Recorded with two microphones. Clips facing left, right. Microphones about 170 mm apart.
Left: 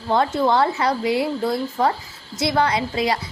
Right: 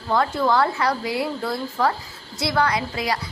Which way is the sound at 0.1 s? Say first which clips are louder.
Left 2 dB; 25° left (ahead or behind).